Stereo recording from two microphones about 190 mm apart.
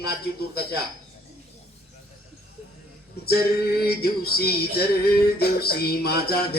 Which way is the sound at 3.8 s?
55° left (ahead or behind).